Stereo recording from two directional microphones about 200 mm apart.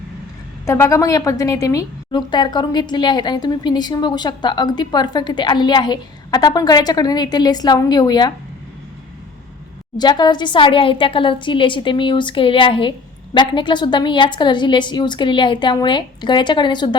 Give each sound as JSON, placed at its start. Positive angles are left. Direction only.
{"t": 0.6, "sound": "a woman's voice", "side_deg": 15}
{"t": 10.0, "sound": "a woman's voice", "side_deg": 20}